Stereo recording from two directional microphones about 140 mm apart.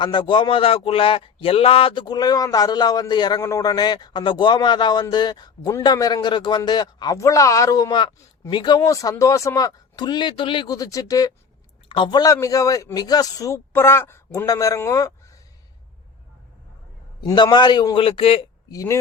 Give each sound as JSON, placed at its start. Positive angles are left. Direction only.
{"t": 0.0, "sound": "a man's voice", "side_deg": 30}
{"t": 17.2, "sound": "speech", "side_deg": 35}
{"t": 18.7, "sound": "speech", "side_deg": 25}